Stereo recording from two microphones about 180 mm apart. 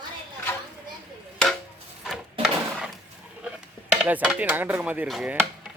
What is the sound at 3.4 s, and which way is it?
Speech, 5° right (ahead or behind).